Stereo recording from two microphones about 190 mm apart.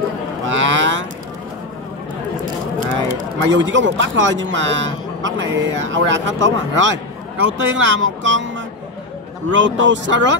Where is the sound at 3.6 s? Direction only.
80° right.